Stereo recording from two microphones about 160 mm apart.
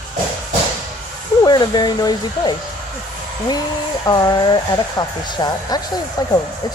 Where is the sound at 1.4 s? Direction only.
25° left (ahead or behind).